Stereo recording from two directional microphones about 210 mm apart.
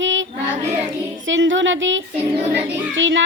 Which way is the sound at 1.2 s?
65° right (ahead or behind).